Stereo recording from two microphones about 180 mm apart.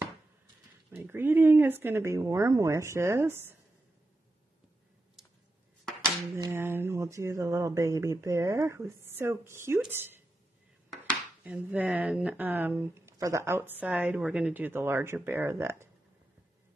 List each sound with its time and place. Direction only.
0.9 s speech: 10° right (ahead or behind)
6.3 s speech: 15° right (ahead or behind)
11.4 s speech: 10° right (ahead or behind)